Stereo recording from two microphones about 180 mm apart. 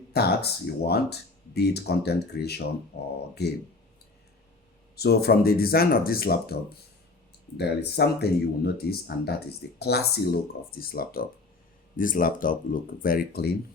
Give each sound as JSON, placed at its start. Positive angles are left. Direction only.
{"t": 0.1, "sound": "speech", "side_deg": 60}
{"t": 4.9, "sound": "speech", "side_deg": 60}